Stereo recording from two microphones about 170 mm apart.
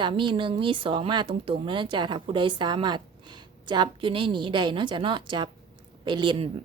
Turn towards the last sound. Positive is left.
turn(degrees=-25)  # may be behind; listen again after turning